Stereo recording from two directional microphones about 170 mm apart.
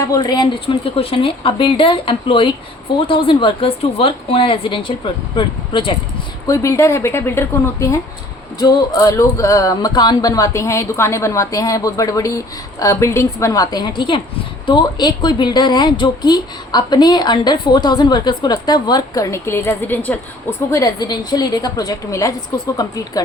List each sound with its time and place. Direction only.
0.0 s speech: 20° left (ahead or behind)
6.5 s a woman's voice: 20° left (ahead or behind)